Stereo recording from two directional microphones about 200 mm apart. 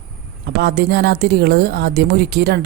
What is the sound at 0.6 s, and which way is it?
Speech, 55° right (ahead or behind).